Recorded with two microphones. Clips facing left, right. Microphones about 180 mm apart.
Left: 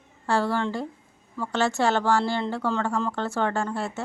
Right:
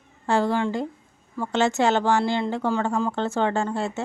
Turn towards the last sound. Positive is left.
turn(degrees=-25)  # may be behind; listen again after turning